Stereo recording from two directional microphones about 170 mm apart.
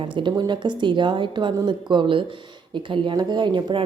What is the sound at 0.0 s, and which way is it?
A woman's voice, 30° right (ahead or behind).